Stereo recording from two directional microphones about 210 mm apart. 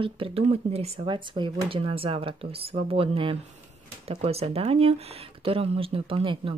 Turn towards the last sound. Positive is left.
turn(degrees=-25)  # may be behind; listen again after turning